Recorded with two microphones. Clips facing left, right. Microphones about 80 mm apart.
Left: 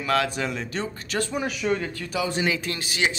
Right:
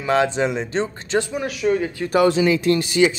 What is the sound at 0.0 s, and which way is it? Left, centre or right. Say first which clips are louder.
Speech: right 6 dB; right.